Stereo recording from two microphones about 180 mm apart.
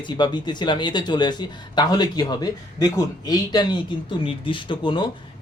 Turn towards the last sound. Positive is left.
turn(degrees=25)  # may be behind; listen again after turning